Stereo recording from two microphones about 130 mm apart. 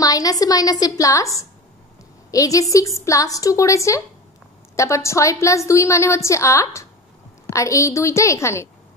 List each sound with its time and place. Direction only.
0.0 s a woman's voice: 25° left (ahead or behind)